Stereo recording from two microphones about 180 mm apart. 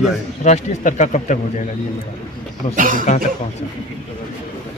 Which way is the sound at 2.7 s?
50° right (ahead or behind).